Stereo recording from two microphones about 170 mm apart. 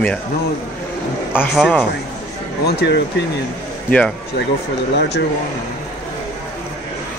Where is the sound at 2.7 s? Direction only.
80° left.